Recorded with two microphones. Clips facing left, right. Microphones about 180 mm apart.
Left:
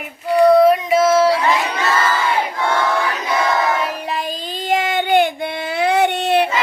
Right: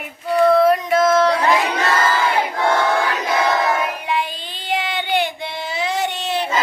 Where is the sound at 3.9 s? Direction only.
35° left (ahead or behind); by 6.4 s 60° left (ahead or behind).